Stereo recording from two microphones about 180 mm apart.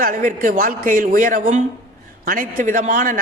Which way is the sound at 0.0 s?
45° right (ahead or behind).